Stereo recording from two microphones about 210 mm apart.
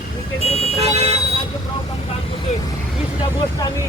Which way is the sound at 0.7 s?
30° right (ahead or behind).